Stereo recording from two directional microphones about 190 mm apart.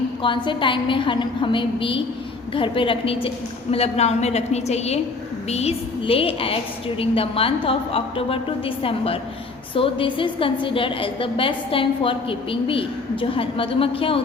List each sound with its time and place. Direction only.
0.2 s a woman's voice: 25° left (ahead or behind)